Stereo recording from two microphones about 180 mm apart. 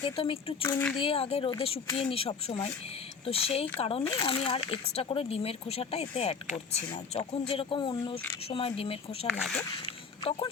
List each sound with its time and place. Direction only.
0.0 s speech: 30° left (ahead or behind)
0.6 s speech: 10° left (ahead or behind)
0.9 s speech: 30° left (ahead or behind)
9.2 s speech: 5° left (ahead or behind)
9.8 s a sound: 30° left (ahead or behind)